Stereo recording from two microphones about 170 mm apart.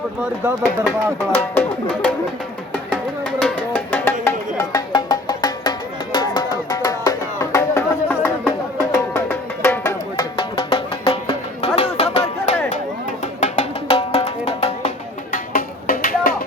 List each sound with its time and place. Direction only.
0.2 s speech: 10° right (ahead or behind)
1.4 s speech: 10° left (ahead or behind)
2.9 s music: 10° left (ahead or behind)
10.3 s music: 30° left (ahead or behind)
15.5 s music: 55° left (ahead or behind)